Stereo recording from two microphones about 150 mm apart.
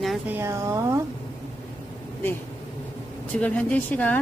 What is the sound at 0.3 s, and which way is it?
Speech, 20° right (ahead or behind).